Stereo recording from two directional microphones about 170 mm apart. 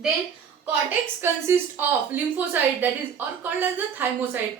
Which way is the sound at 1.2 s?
15° right (ahead or behind).